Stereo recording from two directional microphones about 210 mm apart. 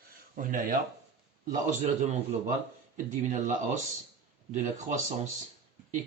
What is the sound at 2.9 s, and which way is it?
Speech, 35° right (ahead or behind).